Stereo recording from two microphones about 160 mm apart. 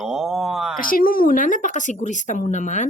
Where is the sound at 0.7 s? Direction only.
60° left (ahead or behind).